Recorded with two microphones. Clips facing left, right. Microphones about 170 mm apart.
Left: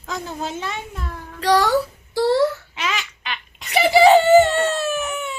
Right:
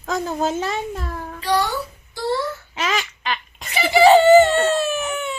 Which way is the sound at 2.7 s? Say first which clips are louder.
Right 3 dB; 40° right (ahead or behind).